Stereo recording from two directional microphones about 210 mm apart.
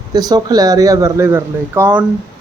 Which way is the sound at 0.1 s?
20° right (ahead or behind).